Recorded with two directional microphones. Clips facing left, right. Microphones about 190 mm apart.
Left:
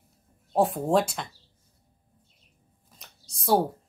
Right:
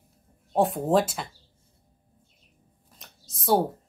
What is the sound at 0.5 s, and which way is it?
Speech, centre (ahead or behind).